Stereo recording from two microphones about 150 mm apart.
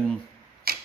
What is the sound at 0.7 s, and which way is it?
Tick-tock, 80° right.